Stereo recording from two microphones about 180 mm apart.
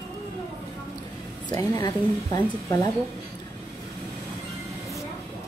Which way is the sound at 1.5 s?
20° left (ahead or behind).